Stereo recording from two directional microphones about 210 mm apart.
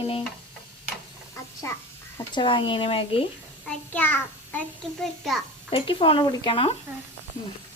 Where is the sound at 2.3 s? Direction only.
25° left (ahead or behind).